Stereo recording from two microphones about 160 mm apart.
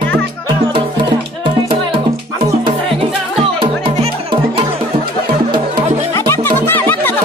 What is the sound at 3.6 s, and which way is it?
Music, 30° right (ahead or behind).